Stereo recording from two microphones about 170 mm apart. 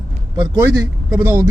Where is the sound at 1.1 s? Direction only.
15° right (ahead or behind).